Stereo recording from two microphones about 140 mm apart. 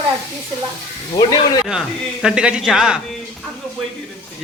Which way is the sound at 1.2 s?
30° left (ahead or behind).